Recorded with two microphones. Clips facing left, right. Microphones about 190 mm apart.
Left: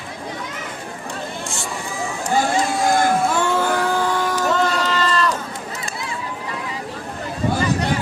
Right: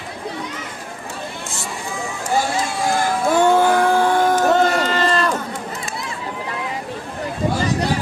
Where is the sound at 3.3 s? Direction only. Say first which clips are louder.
Right 5 dB; 50° right (ahead or behind).